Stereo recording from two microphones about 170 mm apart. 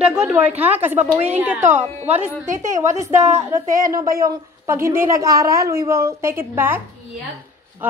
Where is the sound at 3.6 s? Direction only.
50° right (ahead or behind).